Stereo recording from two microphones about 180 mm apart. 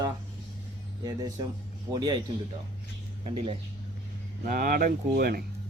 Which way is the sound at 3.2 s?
30° right (ahead or behind).